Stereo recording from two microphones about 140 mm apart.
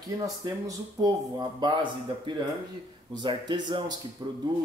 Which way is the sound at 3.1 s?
35° right (ahead or behind).